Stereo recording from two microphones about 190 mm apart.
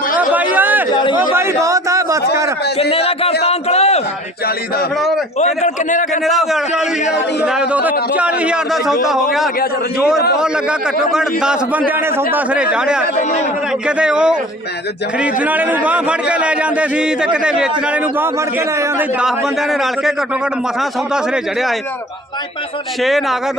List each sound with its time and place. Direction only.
0.2 s chatter: 10° right (ahead or behind)
1.1 s a sound: 10° right (ahead or behind)
2.9 s a man's voice: 30° left (ahead or behind)
3.4 s a sound: 35° left (ahead or behind)
4.9 s a man's voice: centre (ahead or behind)
5.4 s a man's voice: 40° left (ahead or behind)
6.2 s a man's voice: centre (ahead or behind)
10.3 s a man's voice: 5° right (ahead or behind)
23.0 s a man's voice: centre (ahead or behind)